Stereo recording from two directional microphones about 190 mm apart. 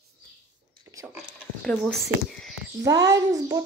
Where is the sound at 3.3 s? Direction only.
15° right (ahead or behind).